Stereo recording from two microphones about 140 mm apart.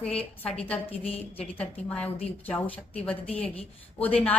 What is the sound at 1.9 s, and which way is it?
A woman's voice, 10° left (ahead or behind).